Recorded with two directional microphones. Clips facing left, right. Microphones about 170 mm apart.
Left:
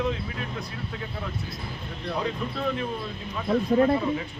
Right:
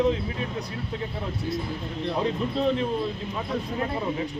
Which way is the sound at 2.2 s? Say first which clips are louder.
Right 4 dB; 30° right (ahead or behind).